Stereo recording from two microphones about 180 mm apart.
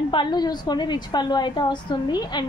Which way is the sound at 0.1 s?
25° left (ahead or behind).